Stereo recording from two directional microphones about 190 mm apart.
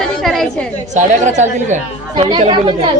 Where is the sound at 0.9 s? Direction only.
40° right (ahead or behind).